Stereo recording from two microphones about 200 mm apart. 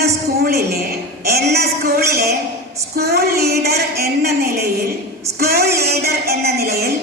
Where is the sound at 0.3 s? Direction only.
50° right (ahead or behind).